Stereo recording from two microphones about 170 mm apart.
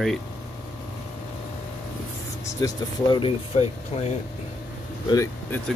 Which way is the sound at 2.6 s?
30° left (ahead or behind).